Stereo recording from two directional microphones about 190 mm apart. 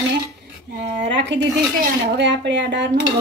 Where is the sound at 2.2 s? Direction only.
65° right (ahead or behind).